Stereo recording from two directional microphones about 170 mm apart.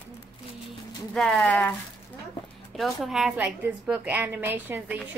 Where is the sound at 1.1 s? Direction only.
Centre (ahead or behind).